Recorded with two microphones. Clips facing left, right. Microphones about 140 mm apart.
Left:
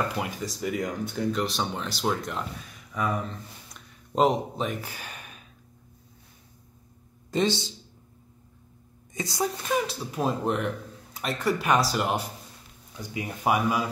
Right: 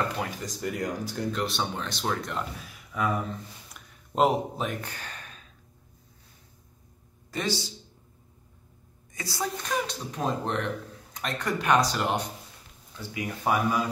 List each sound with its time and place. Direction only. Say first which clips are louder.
0.2 s a man's voice: left 1 dB; 5° left (ahead or behind)
7.2 s speech: left 5 dB; 25° left (ahead or behind)
9.1 s a woman's voice: left 4 dB; 20° left (ahead or behind)
9.6 s speech: left 3 dB; 5° left (ahead or behind)
13.4 s speech: left 1 dB; 10° left (ahead or behind)